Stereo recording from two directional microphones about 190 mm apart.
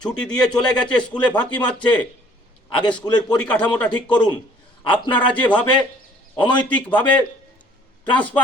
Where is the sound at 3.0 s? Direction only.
20° left (ahead or behind).